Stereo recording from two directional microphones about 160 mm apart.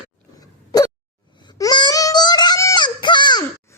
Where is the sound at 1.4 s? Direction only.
25° left (ahead or behind).